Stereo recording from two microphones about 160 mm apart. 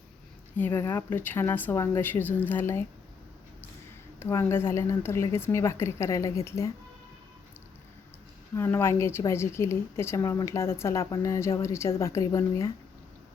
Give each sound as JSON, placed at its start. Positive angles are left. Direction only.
{"t": 0.5, "sound": "a woman's voice", "side_deg": 10}
{"t": 4.2, "sound": "a woman's voice", "side_deg": 15}
{"t": 8.5, "sound": "a woman's voice", "side_deg": 15}